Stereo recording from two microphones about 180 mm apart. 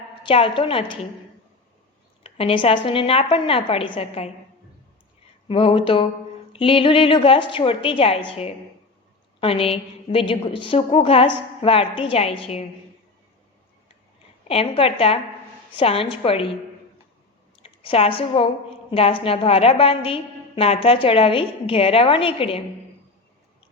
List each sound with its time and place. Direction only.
0.2 s a woman's voice: 30° left (ahead or behind)
2.2 s a woman's voice: 30° left (ahead or behind)
5.5 s a woman's voice: 30° left (ahead or behind)
14.4 s a woman's voice: 30° left (ahead or behind)
17.6 s a woman's voice: 30° left (ahead or behind)